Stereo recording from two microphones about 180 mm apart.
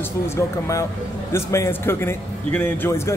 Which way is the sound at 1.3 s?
15° left (ahead or behind).